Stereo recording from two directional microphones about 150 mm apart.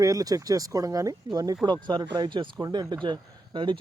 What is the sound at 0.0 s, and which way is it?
Speech, 25° right (ahead or behind).